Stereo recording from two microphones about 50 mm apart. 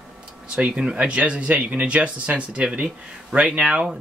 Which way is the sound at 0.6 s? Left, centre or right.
Right.